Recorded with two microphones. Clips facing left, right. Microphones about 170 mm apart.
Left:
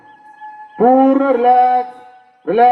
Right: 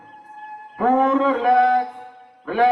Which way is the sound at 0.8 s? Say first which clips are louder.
Left 8 dB; 60° left (ahead or behind).